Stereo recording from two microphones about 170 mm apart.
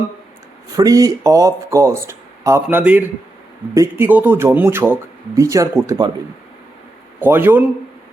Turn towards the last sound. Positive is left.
turn(degrees=-10)  # may be behind; listen again after turning